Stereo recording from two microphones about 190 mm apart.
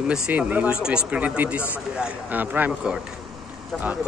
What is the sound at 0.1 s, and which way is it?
Speech, 10° right (ahead or behind).